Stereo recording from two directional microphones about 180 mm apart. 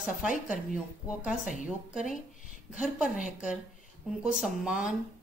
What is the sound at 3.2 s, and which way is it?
Speech, 45° left (ahead or behind).